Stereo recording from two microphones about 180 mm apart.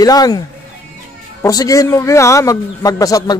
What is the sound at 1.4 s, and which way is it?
A man's voice, 20° left (ahead or behind).